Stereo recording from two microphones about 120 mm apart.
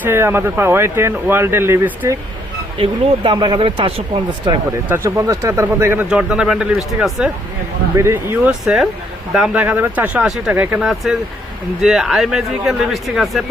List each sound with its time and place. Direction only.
0.0 s speech: 20° right (ahead or behind)
2.7 s speech: 50° right (ahead or behind)
3.3 s speech: 40° right (ahead or behind)
5.0 s speech: 25° right (ahead or behind)
6.1 s speech: 5° right (ahead or behind)
7.9 s speech: 20° right (ahead or behind)
8.4 s speech: 5° right (ahead or behind)